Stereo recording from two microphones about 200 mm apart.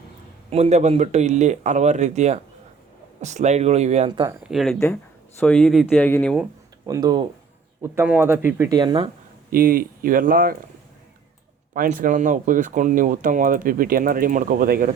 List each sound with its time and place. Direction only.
0.5 s speech: 35° right (ahead or behind)
4.4 s speech: centre (ahead or behind)
6.8 s speech: 20° right (ahead or behind)
7.8 s a man's voice: 10° right (ahead or behind)
9.5 s speech: 45° right (ahead or behind)
11.7 s speech: 40° right (ahead or behind)